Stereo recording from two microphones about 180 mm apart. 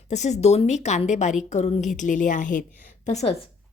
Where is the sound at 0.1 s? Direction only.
40° left (ahead or behind).